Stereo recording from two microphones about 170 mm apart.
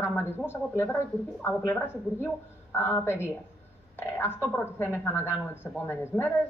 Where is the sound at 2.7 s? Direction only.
15° left (ahead or behind).